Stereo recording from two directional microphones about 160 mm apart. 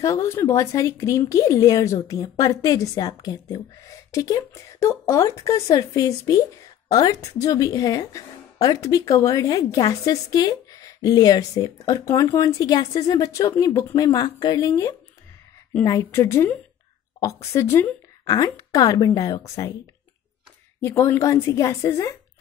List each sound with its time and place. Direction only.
0.0 s a woman's voice: 20° left (ahead or behind)
20.8 s a woman's voice: 15° left (ahead or behind)